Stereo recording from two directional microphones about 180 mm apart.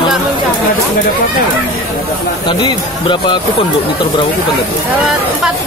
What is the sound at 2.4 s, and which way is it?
Speech, 25° left (ahead or behind).